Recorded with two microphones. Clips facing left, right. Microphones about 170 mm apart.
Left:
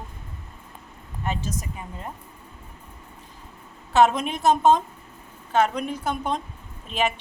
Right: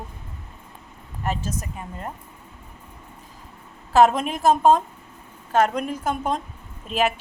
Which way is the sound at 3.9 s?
Centre (ahead or behind).